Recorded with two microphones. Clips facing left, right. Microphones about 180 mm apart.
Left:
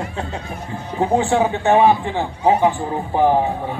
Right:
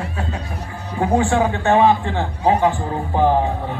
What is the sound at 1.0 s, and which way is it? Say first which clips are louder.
Speech: even; 25° left (ahead or behind).